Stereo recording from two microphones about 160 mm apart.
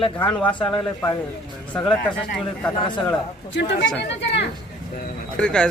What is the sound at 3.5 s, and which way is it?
Speech, 90° left.